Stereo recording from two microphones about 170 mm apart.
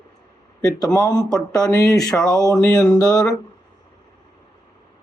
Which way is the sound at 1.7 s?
20° left (ahead or behind).